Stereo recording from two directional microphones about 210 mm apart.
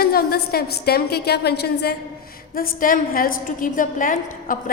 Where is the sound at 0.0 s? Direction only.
45° left (ahead or behind).